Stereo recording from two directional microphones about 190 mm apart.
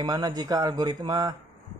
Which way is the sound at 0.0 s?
20° right (ahead or behind).